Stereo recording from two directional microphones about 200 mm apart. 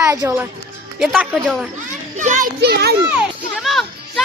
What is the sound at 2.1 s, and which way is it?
Speech, 40° right (ahead or behind).